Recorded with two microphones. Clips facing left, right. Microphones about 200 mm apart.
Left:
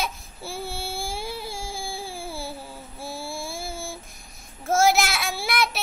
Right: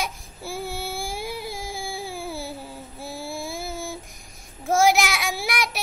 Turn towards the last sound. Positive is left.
turn(degrees=-15)  # may be behind; listen again after turning